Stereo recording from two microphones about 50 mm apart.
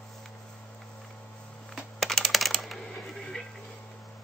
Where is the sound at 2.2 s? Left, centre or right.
Centre.